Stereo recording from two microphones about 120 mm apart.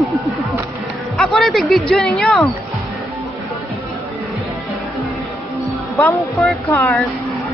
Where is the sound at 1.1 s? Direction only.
Centre (ahead or behind).